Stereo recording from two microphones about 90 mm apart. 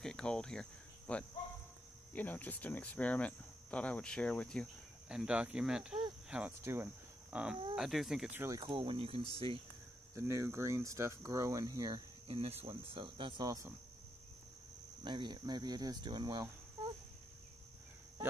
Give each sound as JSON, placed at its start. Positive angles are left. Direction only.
{"t": 0.0, "sound": "cricket", "side_deg": 10}
{"t": 2.1, "sound": "speech", "side_deg": 15}
{"t": 5.0, "sound": "speech", "side_deg": -10}
{"t": 6.6, "sound": "speech", "side_deg": -30}
{"t": 7.3, "sound": "speech", "side_deg": -15}
{"t": 7.7, "sound": "speech", "side_deg": 0}
{"t": 8.6, "sound": "speech", "side_deg": -75}
{"t": 10.1, "sound": "speech", "side_deg": -35}
{"t": 12.3, "sound": "speech", "side_deg": -80}
{"t": 15.0, "sound": "speech", "side_deg": -60}